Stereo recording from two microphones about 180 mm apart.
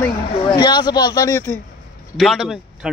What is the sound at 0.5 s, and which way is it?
Speech, 25° left (ahead or behind).